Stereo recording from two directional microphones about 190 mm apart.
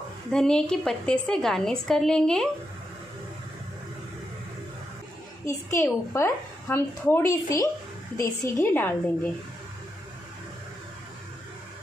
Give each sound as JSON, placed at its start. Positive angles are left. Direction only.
{"t": 0.3, "sound": "a woman's voice", "side_deg": 5}
{"t": 5.5, "sound": "a woman's voice", "side_deg": 15}